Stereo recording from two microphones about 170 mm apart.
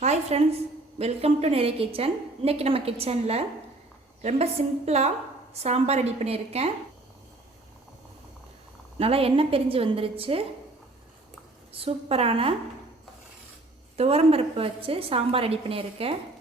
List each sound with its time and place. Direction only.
0.0 s a woman's voice: 40° right (ahead or behind)
9.0 s a woman's voice: 35° right (ahead or behind)
11.7 s a woman's voice: 35° right (ahead or behind)
13.9 s a woman's voice: 35° right (ahead or behind)